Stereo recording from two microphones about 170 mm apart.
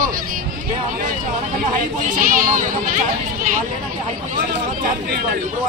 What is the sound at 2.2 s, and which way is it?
Speech, 55° right (ahead or behind).